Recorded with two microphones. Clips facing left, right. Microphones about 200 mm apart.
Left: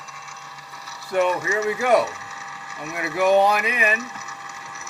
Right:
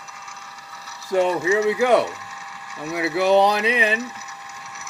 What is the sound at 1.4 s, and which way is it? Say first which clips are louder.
Speech: right 3 dB; 15° right (ahead or behind).